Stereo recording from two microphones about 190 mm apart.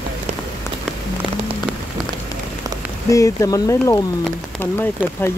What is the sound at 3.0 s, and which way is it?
Speech, 15° left (ahead or behind).